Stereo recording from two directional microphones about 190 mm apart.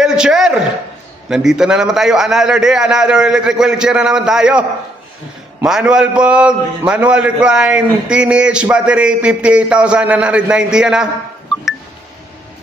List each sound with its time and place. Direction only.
0.0 s a man's voice: 5° right (ahead or behind)